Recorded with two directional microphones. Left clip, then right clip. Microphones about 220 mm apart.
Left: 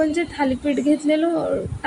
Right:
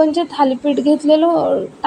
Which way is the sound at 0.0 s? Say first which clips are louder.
Right 7 dB; centre (ahead or behind).